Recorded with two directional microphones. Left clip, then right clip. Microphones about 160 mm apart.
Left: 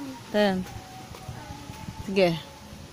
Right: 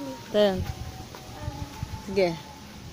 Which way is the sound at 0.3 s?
45° left (ahead or behind).